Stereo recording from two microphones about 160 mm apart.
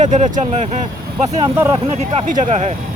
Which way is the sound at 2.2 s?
50° right (ahead or behind).